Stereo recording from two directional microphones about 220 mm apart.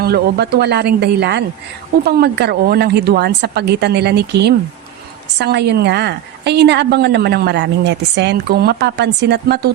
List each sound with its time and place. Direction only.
0.0 s a woman's voice: 45° right (ahead or behind)